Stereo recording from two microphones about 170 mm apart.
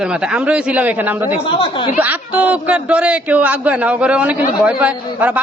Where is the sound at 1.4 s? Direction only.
30° left (ahead or behind).